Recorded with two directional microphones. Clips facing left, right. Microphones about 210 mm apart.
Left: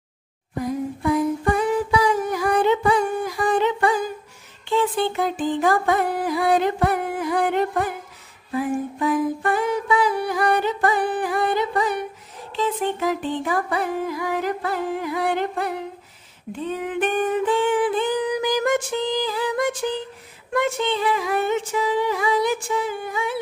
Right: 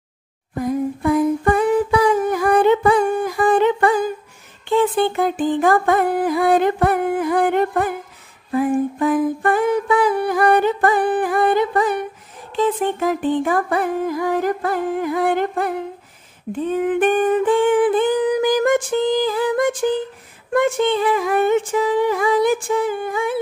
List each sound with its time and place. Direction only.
1.0 s humming: 55° right (ahead or behind)
4.6 s music: 50° right (ahead or behind)
8.5 s a sound: 50° right (ahead or behind)